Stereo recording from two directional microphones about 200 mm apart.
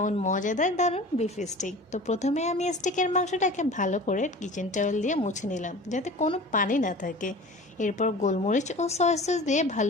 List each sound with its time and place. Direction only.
0.0 s a woman's voice: 40° left (ahead or behind)